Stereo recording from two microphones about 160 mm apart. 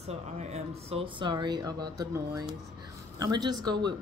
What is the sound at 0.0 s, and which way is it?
Speech, 40° right (ahead or behind).